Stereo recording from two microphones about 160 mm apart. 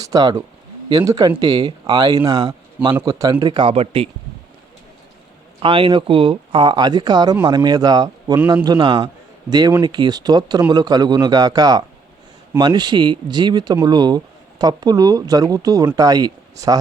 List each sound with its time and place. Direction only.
0.0 s speech: 25° right (ahead or behind)
5.6 s speech: 35° right (ahead or behind)